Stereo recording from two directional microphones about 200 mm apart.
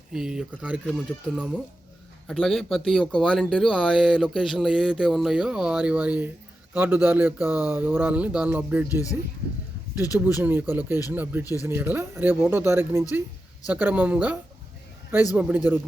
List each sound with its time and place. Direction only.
0.1 s speech: 5° right (ahead or behind)
10.2 s speech: 10° right (ahead or behind)
15.4 s speech: 5° right (ahead or behind)